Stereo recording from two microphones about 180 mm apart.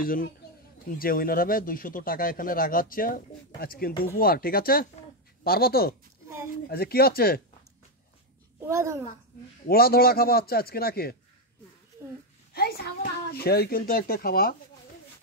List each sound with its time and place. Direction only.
0.0 s a woman's voice: 50° left (ahead or behind)
6.2 s a sound: 15° right (ahead or behind)
6.7 s a woman's voice: 60° left (ahead or behind)
8.5 s a child's voice: 15° right (ahead or behind)
9.7 s a woman's voice: 55° left (ahead or behind)
12.5 s a woman's voice: 60° left (ahead or behind)